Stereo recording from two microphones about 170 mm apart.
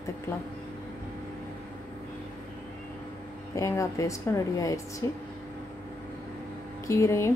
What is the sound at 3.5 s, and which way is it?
A woman's voice, 20° left (ahead or behind).